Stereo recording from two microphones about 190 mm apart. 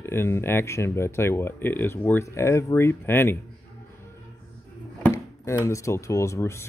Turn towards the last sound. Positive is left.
turn(degrees=15)  # may be behind; listen again after turning